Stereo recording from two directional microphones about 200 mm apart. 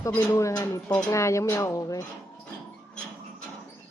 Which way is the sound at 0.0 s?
10° left (ahead or behind).